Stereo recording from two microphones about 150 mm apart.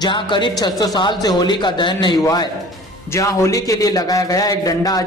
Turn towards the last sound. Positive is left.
turn(degrees=25)  # may be behind; listen again after turning